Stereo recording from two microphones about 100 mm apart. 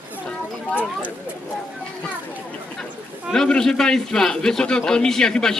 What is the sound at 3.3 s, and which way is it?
A man's voice, 5° left (ahead or behind).